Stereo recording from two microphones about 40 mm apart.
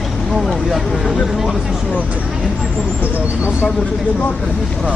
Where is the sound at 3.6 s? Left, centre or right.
Left.